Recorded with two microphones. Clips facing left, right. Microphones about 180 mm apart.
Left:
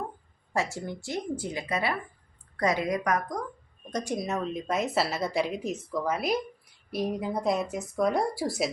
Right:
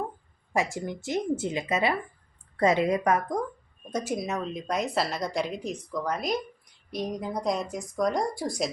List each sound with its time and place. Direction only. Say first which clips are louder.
0.5 s a woman's voice: right 2 dB; 15° right (ahead or behind)
3.9 s a woman's voice: right 1 dB; 5° right (ahead or behind)